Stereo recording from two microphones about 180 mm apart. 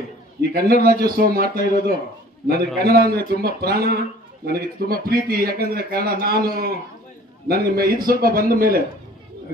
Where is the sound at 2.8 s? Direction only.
60° right (ahead or behind).